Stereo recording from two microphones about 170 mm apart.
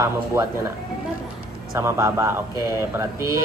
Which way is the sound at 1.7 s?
15° right (ahead or behind).